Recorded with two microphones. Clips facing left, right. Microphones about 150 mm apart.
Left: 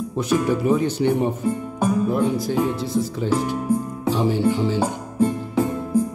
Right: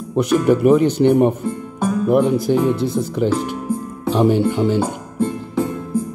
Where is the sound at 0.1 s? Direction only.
70° right (ahead or behind).